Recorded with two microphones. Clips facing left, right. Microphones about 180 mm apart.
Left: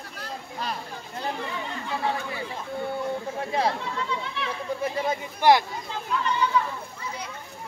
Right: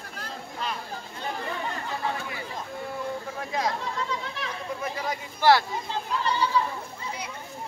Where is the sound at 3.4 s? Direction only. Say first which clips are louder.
Left 3 dB; 30° left (ahead or behind).